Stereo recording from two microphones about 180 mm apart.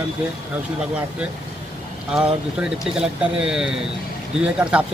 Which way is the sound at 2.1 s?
5° right (ahead or behind).